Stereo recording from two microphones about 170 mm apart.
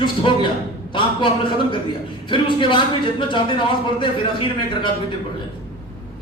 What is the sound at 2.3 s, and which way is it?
A man's voice, 30° left (ahead or behind).